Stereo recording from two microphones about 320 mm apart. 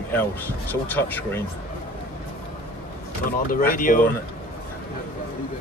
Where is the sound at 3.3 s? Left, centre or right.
Left.